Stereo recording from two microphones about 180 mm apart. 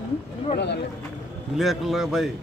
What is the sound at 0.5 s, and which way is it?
Speech, 70° left (ahead or behind).